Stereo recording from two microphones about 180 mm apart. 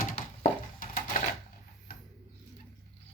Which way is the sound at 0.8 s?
50° left (ahead or behind).